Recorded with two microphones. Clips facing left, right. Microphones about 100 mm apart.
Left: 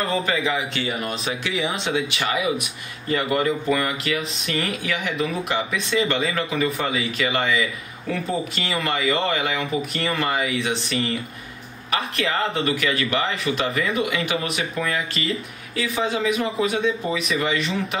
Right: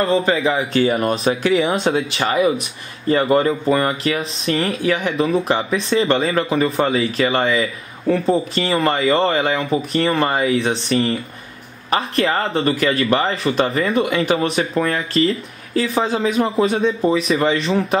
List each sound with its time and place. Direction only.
0.0 s speech: 30° right (ahead or behind)
12.3 s speech: 35° right (ahead or behind)